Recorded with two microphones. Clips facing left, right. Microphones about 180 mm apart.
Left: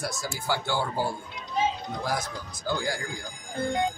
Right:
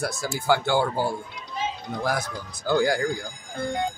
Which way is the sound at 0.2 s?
55° right (ahead or behind).